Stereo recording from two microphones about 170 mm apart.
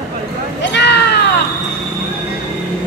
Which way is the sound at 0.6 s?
90° left.